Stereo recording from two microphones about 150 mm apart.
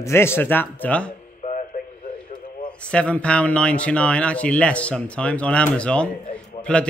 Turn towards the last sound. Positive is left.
turn(degrees=5)  # may be behind; listen again after turning